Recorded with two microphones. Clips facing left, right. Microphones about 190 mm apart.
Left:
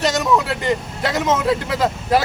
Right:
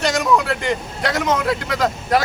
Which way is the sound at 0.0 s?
Centre (ahead or behind).